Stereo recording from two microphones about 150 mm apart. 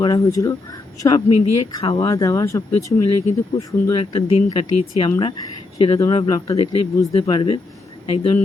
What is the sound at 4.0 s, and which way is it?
Speech, 40° left (ahead or behind).